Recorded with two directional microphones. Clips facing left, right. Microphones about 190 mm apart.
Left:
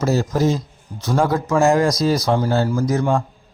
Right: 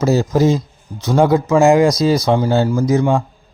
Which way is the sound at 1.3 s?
20° right (ahead or behind).